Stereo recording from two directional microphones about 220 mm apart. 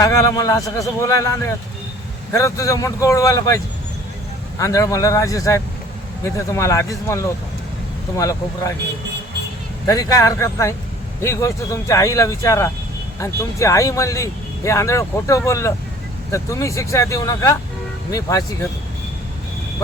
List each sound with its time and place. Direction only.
0.0 s speech: 15° left (ahead or behind)
9.8 s speech: 15° left (ahead or behind)